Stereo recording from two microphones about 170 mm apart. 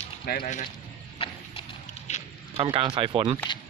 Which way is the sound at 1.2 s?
35° left (ahead or behind).